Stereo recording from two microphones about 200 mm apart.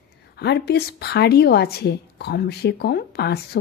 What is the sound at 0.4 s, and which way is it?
A woman's voice, 55° left (ahead or behind).